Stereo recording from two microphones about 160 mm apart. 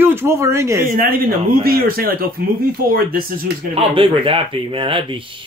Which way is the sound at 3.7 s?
35° right (ahead or behind).